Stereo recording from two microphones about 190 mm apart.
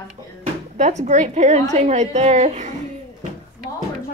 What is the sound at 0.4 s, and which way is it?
A woman's voice, 40° right (ahead or behind).